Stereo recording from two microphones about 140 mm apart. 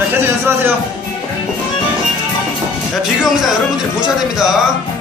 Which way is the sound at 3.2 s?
Centre (ahead or behind).